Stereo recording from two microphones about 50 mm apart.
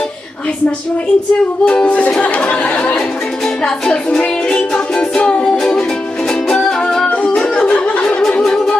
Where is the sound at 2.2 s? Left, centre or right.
Left.